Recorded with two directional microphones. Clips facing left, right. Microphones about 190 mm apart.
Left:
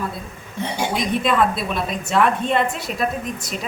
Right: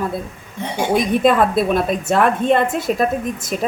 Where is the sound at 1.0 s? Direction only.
50° right (ahead or behind).